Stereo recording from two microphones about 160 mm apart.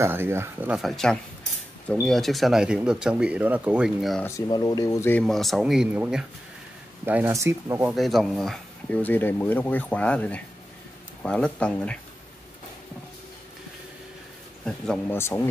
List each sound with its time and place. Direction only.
0.0 s speech: 15° right (ahead or behind)
0.7 s speech: centre (ahead or behind)
4.5 s speech: 25° left (ahead or behind)
5.2 s speech: centre (ahead or behind)
7.1 s speech: 15° right (ahead or behind)
7.9 s speech: centre (ahead or behind)
14.6 s speech: 5° left (ahead or behind)
15.1 s speech: 15° left (ahead or behind)